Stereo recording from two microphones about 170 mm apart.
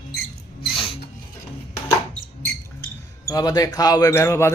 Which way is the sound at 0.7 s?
35° left (ahead or behind).